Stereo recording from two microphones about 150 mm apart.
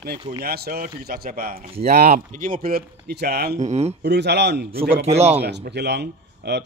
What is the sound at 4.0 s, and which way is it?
Speech, 90° right.